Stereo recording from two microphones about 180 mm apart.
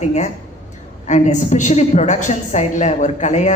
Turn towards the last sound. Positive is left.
turn(degrees=40)  # may be behind; listen again after turning